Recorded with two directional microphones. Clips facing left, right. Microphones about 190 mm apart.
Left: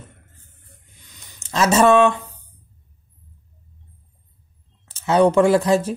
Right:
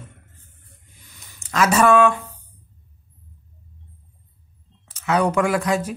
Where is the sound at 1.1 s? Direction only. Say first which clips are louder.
Even; 20° left (ahead or behind).